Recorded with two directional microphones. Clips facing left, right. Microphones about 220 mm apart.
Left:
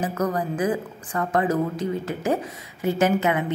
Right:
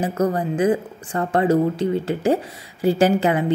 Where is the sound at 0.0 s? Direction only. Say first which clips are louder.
Right 4 dB; 30° right (ahead or behind).